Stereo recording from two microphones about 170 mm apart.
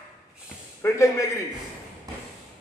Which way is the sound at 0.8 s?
15° left (ahead or behind).